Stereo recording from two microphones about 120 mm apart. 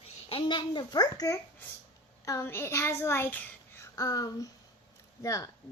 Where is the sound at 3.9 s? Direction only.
30° left (ahead or behind).